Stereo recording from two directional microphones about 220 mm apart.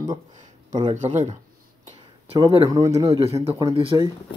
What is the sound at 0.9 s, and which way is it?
Speech, 35° right (ahead or behind).